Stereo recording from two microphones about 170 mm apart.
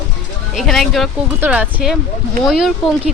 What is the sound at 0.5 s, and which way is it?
Speech, centre (ahead or behind).